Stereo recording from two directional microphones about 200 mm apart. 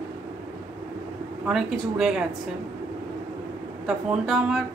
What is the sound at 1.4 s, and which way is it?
Speech, 5° right (ahead or behind).